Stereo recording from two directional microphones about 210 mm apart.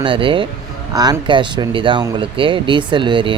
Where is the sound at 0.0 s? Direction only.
25° right (ahead or behind).